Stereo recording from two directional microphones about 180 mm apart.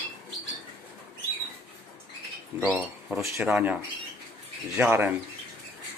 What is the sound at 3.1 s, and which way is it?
Speech, 10° right (ahead or behind).